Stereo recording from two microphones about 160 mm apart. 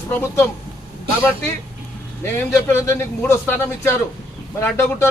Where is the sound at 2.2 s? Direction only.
15° left (ahead or behind).